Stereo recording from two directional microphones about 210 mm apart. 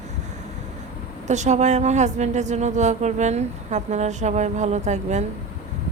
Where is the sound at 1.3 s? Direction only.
35° right (ahead or behind).